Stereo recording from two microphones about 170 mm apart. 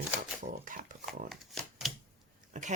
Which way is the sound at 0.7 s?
50° right (ahead or behind).